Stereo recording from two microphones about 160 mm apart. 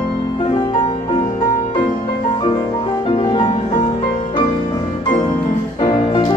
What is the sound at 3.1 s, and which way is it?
Music, 30° left (ahead or behind).